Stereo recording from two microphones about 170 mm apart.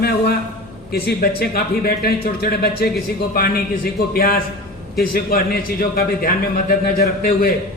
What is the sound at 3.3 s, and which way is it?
A man's voice, 60° left (ahead or behind).